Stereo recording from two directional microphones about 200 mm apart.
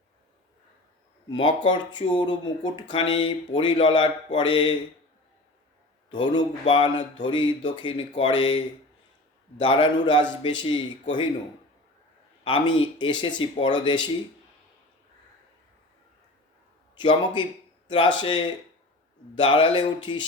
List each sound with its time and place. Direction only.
1.3 s speech: 25° left (ahead or behind)
6.1 s speech: 25° left (ahead or behind)
12.5 s speech: 25° left (ahead or behind)
16.9 s speech: 25° left (ahead or behind)